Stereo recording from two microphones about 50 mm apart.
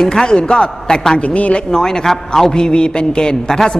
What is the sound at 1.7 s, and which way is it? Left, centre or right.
A man's voice, centre.